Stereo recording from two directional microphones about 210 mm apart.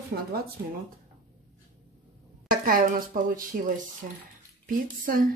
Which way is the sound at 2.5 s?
40° right (ahead or behind).